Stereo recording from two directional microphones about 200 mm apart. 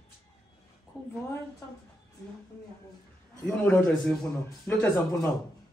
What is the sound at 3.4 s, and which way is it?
Speech, 10° left (ahead or behind).